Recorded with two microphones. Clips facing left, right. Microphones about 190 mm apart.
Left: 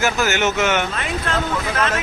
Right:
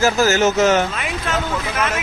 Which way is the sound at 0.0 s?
35° right (ahead or behind).